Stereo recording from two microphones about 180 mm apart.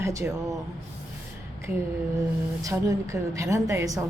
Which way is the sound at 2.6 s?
20° right (ahead or behind).